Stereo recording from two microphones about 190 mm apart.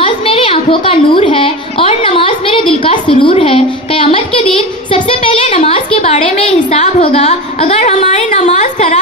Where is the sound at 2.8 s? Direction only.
25° left (ahead or behind).